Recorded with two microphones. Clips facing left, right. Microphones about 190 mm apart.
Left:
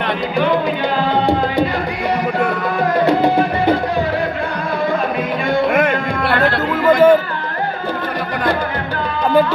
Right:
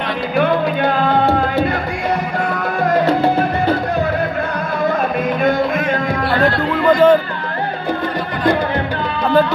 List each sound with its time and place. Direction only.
5.7 s music: 60° left (ahead or behind)
6.9 s music: 10° left (ahead or behind)